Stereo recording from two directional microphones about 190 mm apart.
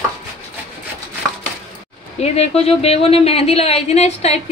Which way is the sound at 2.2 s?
35° left (ahead or behind).